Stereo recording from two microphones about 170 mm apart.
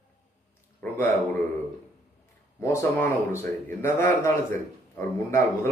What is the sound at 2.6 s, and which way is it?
Speech, 15° left (ahead or behind).